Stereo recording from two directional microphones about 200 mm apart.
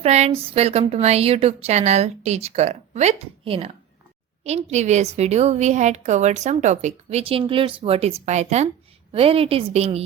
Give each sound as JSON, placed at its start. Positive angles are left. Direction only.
{"t": 0.0, "sound": "a woman's voice", "side_deg": -30}